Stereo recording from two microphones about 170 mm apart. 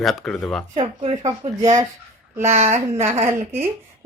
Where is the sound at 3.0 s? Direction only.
15° right (ahead or behind).